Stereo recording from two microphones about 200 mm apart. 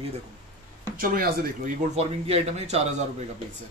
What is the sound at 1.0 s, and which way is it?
Speech, 45° right (ahead or behind).